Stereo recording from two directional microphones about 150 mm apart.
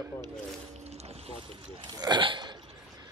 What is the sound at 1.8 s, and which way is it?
Hiccup, 30° right (ahead or behind).